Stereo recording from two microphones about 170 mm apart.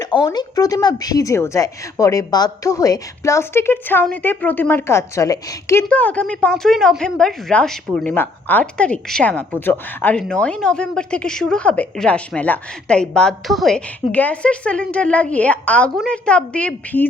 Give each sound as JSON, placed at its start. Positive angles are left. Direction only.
{"t": 0.0, "sound": "a woman's voice", "side_deg": 25}